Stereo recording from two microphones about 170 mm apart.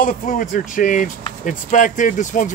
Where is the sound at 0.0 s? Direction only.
50° left (ahead or behind).